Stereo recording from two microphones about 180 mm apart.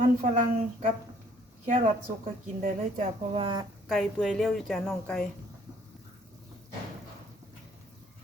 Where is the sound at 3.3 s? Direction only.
30° right (ahead or behind).